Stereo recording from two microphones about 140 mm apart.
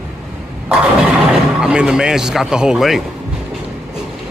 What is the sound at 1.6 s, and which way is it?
A man's voice, 5° right (ahead or behind).